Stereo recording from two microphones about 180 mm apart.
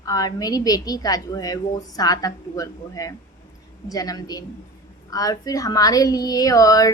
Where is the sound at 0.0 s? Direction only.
20° left (ahead or behind).